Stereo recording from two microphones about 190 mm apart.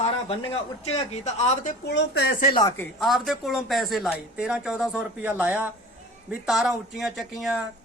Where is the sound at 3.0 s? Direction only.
Centre (ahead or behind).